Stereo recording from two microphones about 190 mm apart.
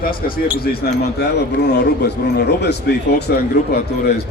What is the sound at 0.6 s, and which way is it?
A man's voice, 55° left (ahead or behind).